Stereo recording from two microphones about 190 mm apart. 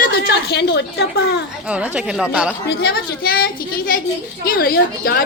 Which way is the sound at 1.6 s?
5° right (ahead or behind).